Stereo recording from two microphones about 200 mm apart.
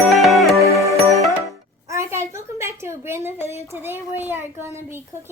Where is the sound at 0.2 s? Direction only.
Centre (ahead or behind).